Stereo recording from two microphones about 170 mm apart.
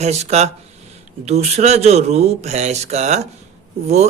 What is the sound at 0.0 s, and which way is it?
Speech, 40° right (ahead or behind).